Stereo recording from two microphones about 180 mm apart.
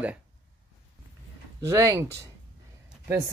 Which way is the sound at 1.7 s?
15° right (ahead or behind).